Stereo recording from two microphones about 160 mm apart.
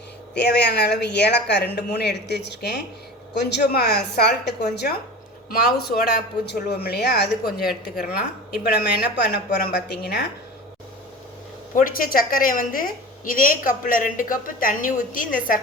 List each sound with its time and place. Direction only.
0.3 s speech: 90° left
5.5 s speech: 75° left (ahead or behind)
11.7 s a woman's voice: 60° left (ahead or behind)